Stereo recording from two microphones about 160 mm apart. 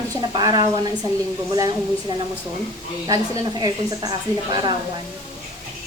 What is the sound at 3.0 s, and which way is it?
A woman's voice, 25° right (ahead or behind).